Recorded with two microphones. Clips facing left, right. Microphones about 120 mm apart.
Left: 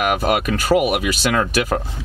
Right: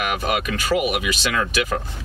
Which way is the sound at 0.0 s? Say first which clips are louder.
Left 5 dB; 45° left (ahead or behind).